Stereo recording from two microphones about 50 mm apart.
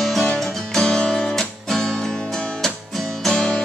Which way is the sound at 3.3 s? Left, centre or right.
Centre.